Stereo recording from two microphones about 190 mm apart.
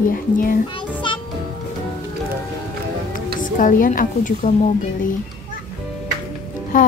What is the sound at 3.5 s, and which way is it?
Speech, 45° left (ahead or behind).